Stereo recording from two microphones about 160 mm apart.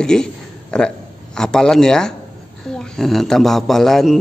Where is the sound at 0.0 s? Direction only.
5° left (ahead or behind).